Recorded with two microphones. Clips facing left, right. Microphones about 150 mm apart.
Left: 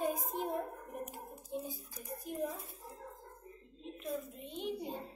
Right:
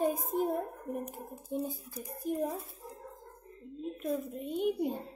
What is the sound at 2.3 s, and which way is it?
Child singing, 50° right (ahead or behind).